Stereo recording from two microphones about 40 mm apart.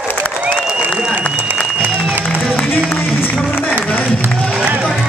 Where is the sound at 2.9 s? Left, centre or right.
Left.